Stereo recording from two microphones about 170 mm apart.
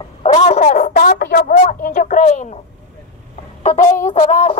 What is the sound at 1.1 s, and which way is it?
Speech, 65° left (ahead or behind).